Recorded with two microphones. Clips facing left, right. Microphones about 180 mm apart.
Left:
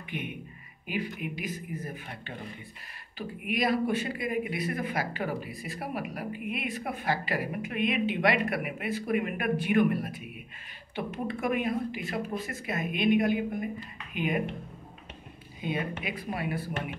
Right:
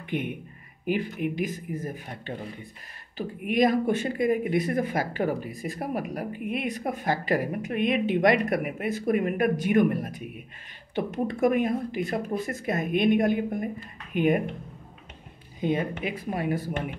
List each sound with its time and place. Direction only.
0.9 s speech: 45° right (ahead or behind)
3.5 s speech: 45° right (ahead or behind)
15.6 s speech: 40° right (ahead or behind)